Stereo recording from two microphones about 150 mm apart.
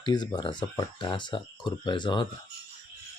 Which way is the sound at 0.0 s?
30° left (ahead or behind).